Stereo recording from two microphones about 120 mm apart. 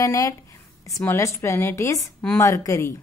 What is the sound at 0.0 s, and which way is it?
A woman's voice, 25° left (ahead or behind).